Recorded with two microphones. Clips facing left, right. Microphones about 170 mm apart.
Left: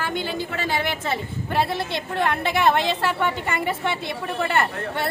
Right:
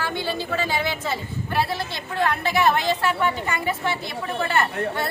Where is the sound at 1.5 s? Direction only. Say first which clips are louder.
Left 2 dB; 25° left (ahead or behind).